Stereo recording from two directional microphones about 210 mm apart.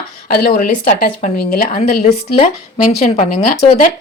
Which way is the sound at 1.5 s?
45° left (ahead or behind).